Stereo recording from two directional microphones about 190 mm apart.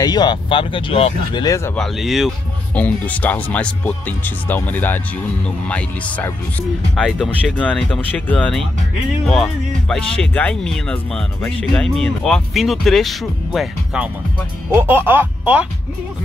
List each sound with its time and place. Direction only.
0.0 s speech: 20° left (ahead or behind)
1.8 s speech: centre (ahead or behind)